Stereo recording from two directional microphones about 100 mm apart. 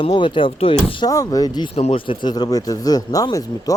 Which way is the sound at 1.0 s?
35° left (ahead or behind).